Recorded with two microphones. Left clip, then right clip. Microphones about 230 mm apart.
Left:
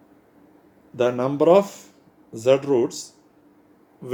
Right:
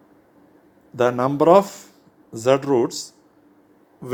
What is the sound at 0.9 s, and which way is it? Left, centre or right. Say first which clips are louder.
Speech: right 2 dB; centre.